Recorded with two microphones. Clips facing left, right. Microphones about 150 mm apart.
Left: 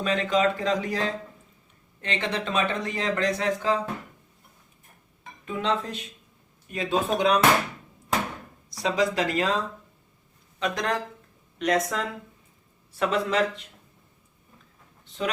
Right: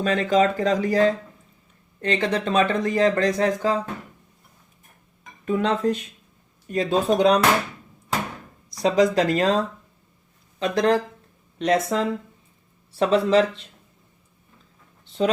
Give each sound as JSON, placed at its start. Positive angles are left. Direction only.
{"t": 0.0, "sound": "speech", "side_deg": -40}
{"t": 5.5, "sound": "speech", "side_deg": -45}
{"t": 8.8, "sound": "speech", "side_deg": -40}
{"t": 10.6, "sound": "speech", "side_deg": -30}